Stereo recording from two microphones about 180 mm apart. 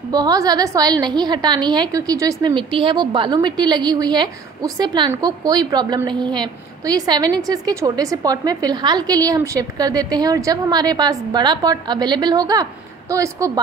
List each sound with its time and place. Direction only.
0.1 s a woman's voice: 20° right (ahead or behind)